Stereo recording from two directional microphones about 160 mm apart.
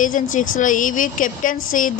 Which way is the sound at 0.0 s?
55° left (ahead or behind).